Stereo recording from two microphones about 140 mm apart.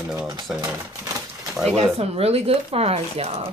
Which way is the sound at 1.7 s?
45° right (ahead or behind).